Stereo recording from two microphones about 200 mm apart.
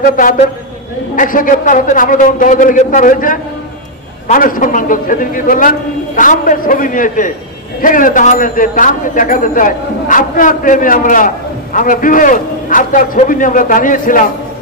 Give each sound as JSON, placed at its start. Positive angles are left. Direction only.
{"t": 0.0, "sound": "a man's voice", "side_deg": 45}